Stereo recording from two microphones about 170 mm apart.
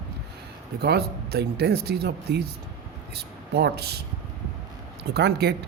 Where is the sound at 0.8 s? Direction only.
70° right (ahead or behind).